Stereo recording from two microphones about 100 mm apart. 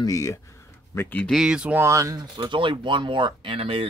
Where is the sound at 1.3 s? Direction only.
5° right (ahead or behind).